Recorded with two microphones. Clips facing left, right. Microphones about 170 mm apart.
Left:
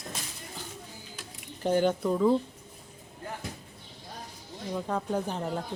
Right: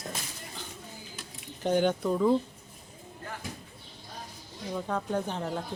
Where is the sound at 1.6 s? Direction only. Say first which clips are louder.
Left 1 dB; 5° left (ahead or behind).